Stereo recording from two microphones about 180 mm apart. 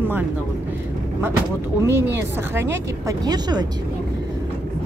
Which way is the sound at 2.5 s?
15° right (ahead or behind).